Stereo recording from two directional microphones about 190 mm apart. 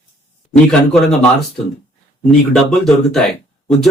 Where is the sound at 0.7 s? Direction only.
Centre (ahead or behind).